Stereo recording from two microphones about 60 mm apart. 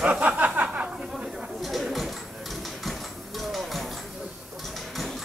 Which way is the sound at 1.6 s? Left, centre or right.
Centre.